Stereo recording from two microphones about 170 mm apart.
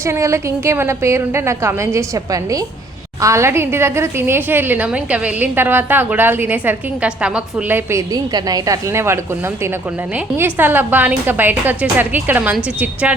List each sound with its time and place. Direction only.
0.0 s a woman's voice: 15° right (ahead or behind)